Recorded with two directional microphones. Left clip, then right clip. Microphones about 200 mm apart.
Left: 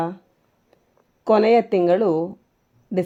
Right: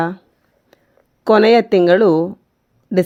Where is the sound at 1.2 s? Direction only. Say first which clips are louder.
Right 5 dB; 20° right (ahead or behind).